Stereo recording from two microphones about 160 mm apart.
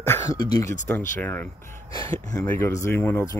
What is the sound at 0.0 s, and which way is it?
Speech, 15° left (ahead or behind).